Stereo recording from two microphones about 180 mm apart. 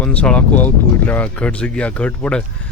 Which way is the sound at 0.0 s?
5° left (ahead or behind).